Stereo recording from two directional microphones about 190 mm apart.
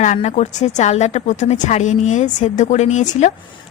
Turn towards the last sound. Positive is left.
turn(degrees=40)  # may be behind; listen again after turning